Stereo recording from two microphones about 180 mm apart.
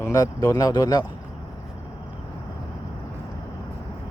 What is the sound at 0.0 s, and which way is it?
Speech, 15° left (ahead or behind).